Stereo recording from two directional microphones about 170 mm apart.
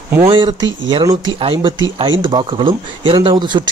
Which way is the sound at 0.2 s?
30° right (ahead or behind).